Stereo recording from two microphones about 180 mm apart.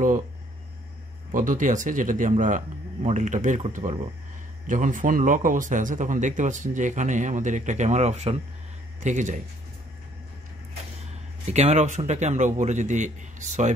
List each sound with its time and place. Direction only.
1.3 s speech: 45° right (ahead or behind)
11.5 s a man's voice: 40° right (ahead or behind)